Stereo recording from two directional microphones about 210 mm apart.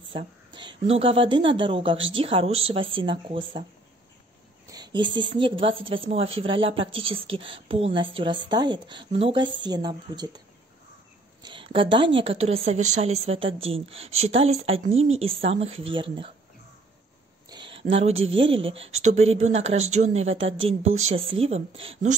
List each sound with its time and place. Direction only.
0.1 s speech: 20° right (ahead or behind)
4.6 s speech: 20° right (ahead or behind)
11.4 s speech: 25° right (ahead or behind)
17.5 s a sound: 25° right (ahead or behind)
18.1 s speech: 65° right (ahead or behind)
18.5 s a woman's voice: 25° right (ahead or behind)